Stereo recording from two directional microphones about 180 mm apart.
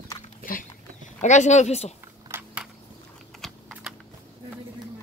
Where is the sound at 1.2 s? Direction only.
40° left (ahead or behind).